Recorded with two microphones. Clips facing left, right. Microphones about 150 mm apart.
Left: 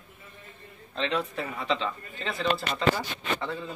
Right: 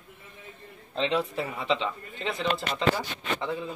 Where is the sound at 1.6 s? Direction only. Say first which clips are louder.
Right 1 dB; 20° right (ahead or behind).